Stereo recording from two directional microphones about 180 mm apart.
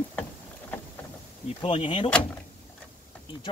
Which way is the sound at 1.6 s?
30° left (ahead or behind).